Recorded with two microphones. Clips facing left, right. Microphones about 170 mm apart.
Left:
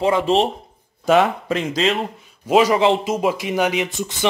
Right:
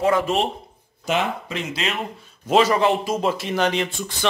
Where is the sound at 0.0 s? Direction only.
25° left (ahead or behind).